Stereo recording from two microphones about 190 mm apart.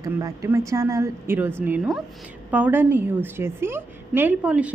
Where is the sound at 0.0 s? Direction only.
20° right (ahead or behind).